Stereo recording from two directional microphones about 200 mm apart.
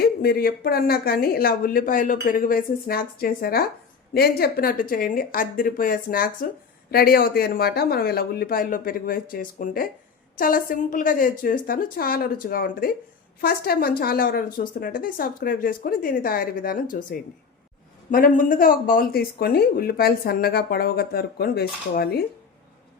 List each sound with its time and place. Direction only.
0.0 s speech: 50° left (ahead or behind)